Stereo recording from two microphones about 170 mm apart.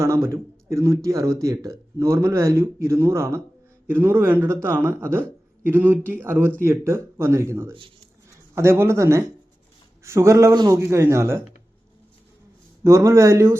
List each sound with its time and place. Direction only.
0.0 s speech: 15° right (ahead or behind)
12.8 s speech: 15° right (ahead or behind)